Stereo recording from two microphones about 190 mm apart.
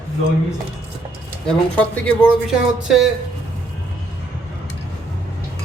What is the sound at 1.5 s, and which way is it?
Speech, 5° left (ahead or behind).